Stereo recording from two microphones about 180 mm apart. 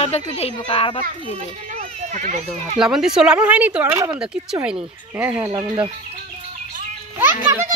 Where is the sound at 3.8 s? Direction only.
20° right (ahead or behind).